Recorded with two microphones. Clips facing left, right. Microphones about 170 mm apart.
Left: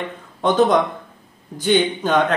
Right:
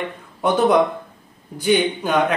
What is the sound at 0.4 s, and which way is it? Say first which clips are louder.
Speech: even; 10° right (ahead or behind).